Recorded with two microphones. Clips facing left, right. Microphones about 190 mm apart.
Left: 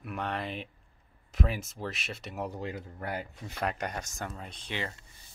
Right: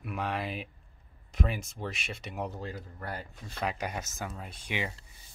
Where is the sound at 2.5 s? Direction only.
15° left (ahead or behind).